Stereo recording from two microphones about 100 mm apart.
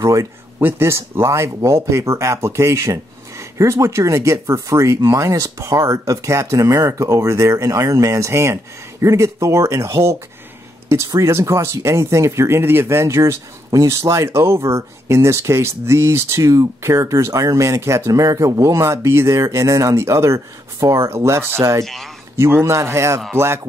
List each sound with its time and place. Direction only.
0.0 s speech: 30° right (ahead or behind)
21.8 s speech: centre (ahead or behind)
22.4 s speech: 25° right (ahead or behind)